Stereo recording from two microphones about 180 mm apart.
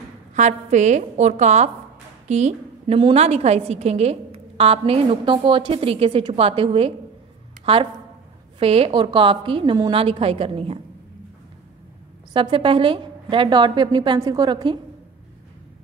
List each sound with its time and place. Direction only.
0.3 s a woman's voice: 40° right (ahead or behind)
12.3 s a woman's voice: 25° right (ahead or behind)